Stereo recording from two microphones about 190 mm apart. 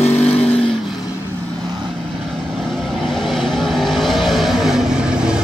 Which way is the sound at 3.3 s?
Centre (ahead or behind).